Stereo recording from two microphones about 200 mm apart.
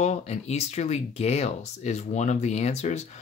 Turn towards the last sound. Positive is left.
turn(degrees=35)  # may be behind; listen again after turning